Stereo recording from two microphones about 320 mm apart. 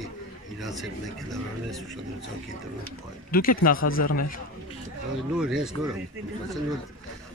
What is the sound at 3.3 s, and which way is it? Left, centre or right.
Speech, left.